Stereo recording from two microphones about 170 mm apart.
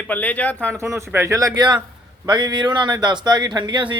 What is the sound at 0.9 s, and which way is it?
Speech, 15° right (ahead or behind).